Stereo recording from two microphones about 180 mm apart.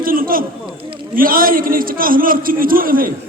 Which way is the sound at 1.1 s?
50° right (ahead or behind).